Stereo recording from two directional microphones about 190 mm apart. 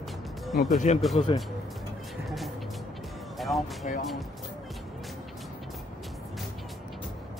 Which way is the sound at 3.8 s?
40° left (ahead or behind).